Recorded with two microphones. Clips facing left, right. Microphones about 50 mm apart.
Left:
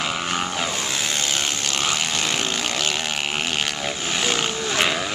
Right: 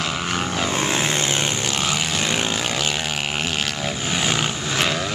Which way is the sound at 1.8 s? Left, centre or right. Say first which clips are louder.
Left 1 dB; centre.